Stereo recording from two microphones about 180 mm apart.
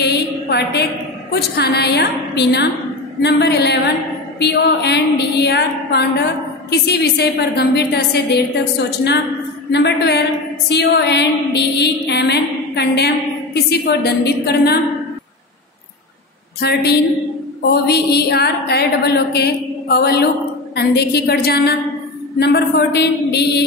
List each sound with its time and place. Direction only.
0.0 s a sound: 70° left (ahead or behind)
1.3 s a woman's voice: 60° left (ahead or behind)
3.2 s music: 65° left (ahead or behind)
6.7 s a woman's voice: 65° left (ahead or behind)
9.7 s music: 70° left (ahead or behind)
13.7 s a woman's voice: 65° left (ahead or behind)
16.6 s a woman's voice: 65° left (ahead or behind)